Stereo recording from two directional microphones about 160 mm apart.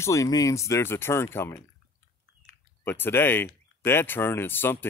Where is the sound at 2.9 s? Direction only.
15° left (ahead or behind).